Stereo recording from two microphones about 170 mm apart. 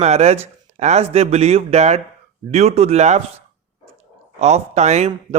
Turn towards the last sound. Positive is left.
turn(degrees=-40)  # may be behind; listen again after turning